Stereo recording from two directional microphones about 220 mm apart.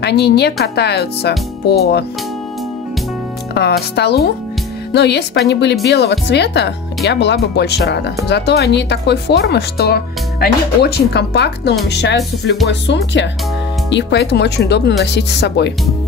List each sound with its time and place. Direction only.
0.0 s speech: 50° left (ahead or behind)
3.5 s speech: 50° left (ahead or behind)